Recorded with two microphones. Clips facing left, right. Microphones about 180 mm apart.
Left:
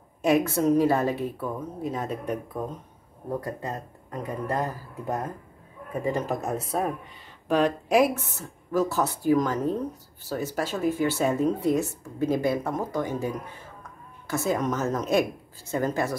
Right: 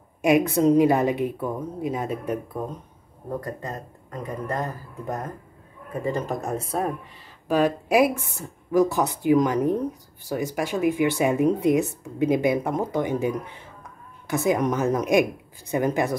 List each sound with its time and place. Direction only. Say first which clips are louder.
0.2 s speech: right 3 dB; 15° right (ahead or behind)
3.6 s speech: even; 10° left (ahead or behind); by 16.2 s 15° right (ahead or behind)